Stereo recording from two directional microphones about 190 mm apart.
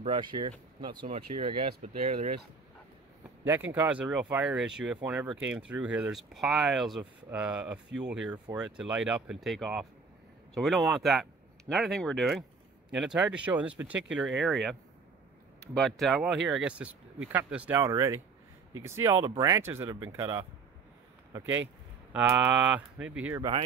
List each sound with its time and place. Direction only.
0.0 s speech: 25° right (ahead or behind)
3.4 s speech: 10° right (ahead or behind)